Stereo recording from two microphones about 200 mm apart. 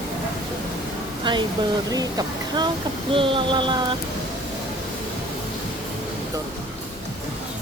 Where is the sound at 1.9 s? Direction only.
20° right (ahead or behind).